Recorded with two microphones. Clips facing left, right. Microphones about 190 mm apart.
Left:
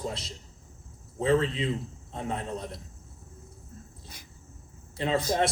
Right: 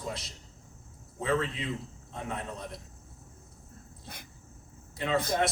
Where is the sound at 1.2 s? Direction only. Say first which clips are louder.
Left 5 dB; 30° left (ahead or behind).